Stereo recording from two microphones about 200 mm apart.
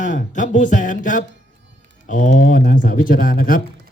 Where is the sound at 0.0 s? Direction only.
40° left (ahead or behind).